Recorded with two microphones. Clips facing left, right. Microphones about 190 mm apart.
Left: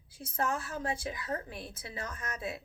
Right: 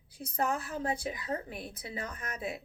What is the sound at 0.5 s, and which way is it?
Speech, 20° right (ahead or behind).